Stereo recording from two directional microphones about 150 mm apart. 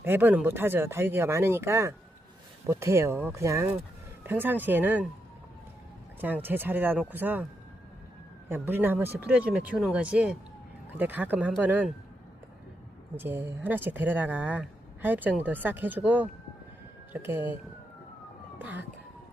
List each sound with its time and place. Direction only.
0.0 s speech: 15° right (ahead or behind)
6.1 s speech: 10° right (ahead or behind)
8.4 s speech: 15° right (ahead or behind)
13.1 s speech: 15° right (ahead or behind)
18.6 s speech: 10° right (ahead or behind)